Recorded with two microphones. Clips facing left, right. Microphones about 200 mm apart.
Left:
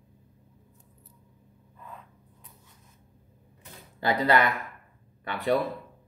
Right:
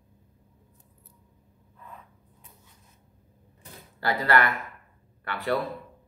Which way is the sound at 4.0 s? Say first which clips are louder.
Left 1 dB; 20° left (ahead or behind).